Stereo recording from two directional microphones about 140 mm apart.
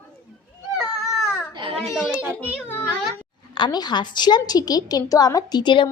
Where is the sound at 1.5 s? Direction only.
35° right (ahead or behind).